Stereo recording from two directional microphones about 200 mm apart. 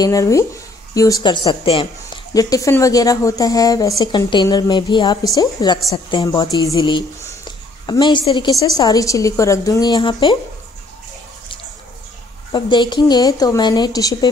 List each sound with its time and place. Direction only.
0.0 s speech: 15° left (ahead or behind)
12.5 s speech: 20° left (ahead or behind)